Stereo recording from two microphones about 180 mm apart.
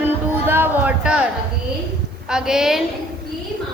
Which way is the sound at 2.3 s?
5° right (ahead or behind).